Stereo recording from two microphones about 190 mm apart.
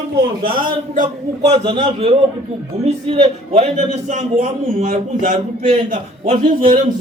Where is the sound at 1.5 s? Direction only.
30° right (ahead or behind); by 6.7 s 45° right (ahead or behind).